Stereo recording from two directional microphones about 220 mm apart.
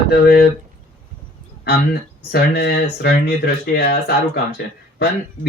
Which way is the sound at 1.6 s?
45° left (ahead or behind).